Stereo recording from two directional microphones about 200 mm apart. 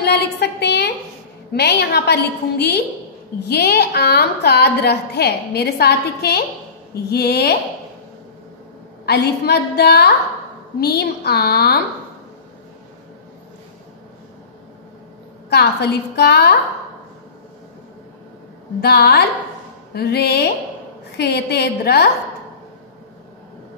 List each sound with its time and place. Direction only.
0.0 s a sound: 55° left (ahead or behind)
1.5 s a woman's voice: 55° left (ahead or behind)
9.0 s a woman's voice: 55° left (ahead or behind)
15.5 s a woman's voice: 55° left (ahead or behind)
18.8 s a woman's voice: 55° left (ahead or behind)